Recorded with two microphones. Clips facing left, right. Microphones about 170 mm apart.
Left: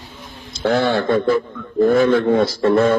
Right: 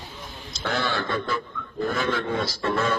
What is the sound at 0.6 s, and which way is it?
Speech, 25° left (ahead or behind).